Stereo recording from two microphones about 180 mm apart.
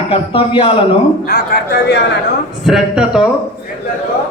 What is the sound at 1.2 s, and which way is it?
Speech, 60° left (ahead or behind).